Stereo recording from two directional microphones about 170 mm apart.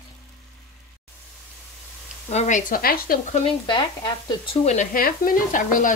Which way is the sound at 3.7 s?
25° left (ahead or behind).